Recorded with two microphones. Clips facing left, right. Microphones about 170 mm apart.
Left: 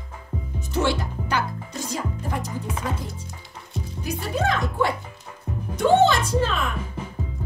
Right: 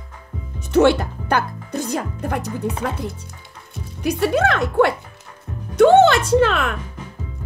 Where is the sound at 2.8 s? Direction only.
65° right (ahead or behind).